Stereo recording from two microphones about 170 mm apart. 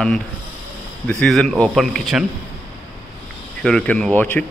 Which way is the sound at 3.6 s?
5° left (ahead or behind).